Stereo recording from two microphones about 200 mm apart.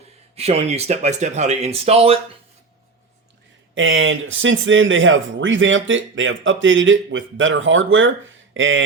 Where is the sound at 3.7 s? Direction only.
70° right (ahead or behind).